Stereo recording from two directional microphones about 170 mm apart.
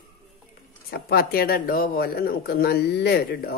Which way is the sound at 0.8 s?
65° left (ahead or behind).